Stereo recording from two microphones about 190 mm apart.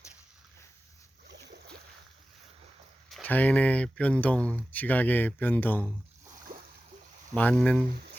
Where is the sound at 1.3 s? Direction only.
65° right (ahead or behind).